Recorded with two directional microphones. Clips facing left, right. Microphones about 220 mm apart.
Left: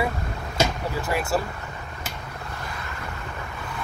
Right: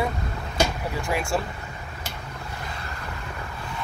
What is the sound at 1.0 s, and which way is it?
Speech, 5° left (ahead or behind).